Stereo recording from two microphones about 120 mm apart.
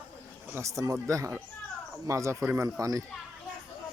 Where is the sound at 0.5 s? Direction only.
25° right (ahead or behind).